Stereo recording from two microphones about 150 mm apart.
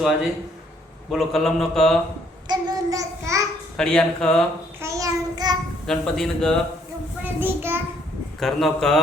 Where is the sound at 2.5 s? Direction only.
25° right (ahead or behind).